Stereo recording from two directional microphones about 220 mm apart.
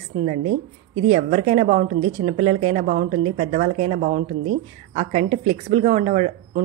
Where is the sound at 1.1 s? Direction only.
30° right (ahead or behind).